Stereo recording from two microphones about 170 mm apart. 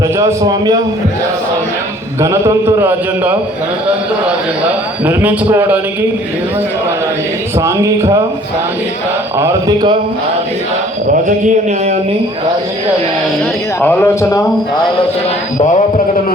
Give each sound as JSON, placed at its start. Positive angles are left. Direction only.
{"t": 0.2, "sound": "speech", "side_deg": -20}
{"t": 2.2, "sound": "a man's voice", "side_deg": -15}
{"t": 5.0, "sound": "a man's voice", "side_deg": -10}
{"t": 7.6, "sound": "speech", "side_deg": -20}
{"t": 9.4, "sound": "speech", "side_deg": -20}
{"t": 11.3, "sound": "a man's voice", "side_deg": -45}
{"t": 13.8, "sound": "speech", "side_deg": 15}